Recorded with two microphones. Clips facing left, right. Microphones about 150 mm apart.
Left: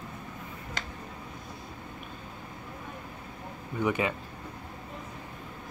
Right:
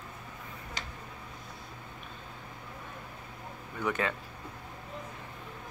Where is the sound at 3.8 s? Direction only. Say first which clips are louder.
Left 4 dB; 15° left (ahead or behind).